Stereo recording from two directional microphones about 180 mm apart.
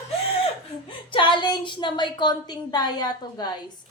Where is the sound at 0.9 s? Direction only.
30° left (ahead or behind).